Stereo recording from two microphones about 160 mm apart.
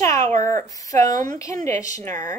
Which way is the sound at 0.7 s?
20° left (ahead or behind).